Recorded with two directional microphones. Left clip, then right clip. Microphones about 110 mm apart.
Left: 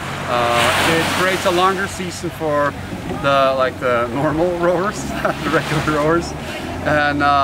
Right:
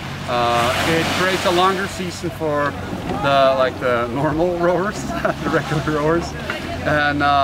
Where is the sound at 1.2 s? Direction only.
10° right (ahead or behind).